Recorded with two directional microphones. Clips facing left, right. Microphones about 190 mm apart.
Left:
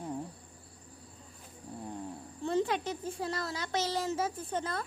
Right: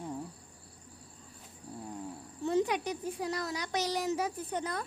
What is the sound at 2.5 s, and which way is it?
A child's voice, 15° right (ahead or behind).